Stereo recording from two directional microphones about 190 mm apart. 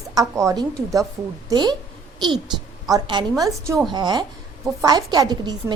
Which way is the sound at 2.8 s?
20° right (ahead or behind).